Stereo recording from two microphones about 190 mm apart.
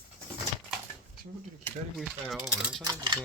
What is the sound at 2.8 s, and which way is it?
Speech, 20° right (ahead or behind).